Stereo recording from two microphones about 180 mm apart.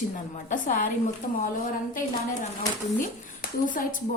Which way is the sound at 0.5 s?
45° left (ahead or behind).